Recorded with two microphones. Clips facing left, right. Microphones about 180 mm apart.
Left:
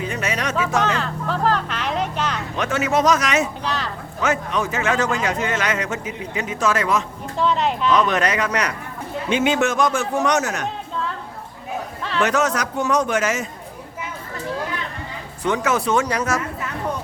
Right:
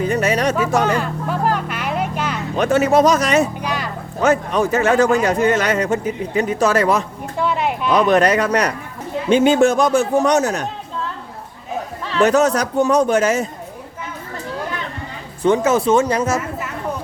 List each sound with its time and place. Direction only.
0.0 s music: 40° right (ahead or behind)
0.5 s music: 10° right (ahead or behind)
2.6 s speech: 35° right (ahead or behind)
3.6 s a sound: 10° right (ahead or behind)
4.2 s speech: 35° right (ahead or behind)
7.3 s speech: 10° right (ahead or behind)
7.9 s speech: 35° right (ahead or behind)
12.2 s speech: 35° right (ahead or behind)
15.4 s speech: 30° right (ahead or behind)